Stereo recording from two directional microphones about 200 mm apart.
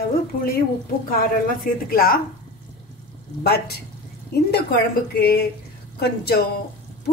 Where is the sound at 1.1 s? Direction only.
45° left (ahead or behind).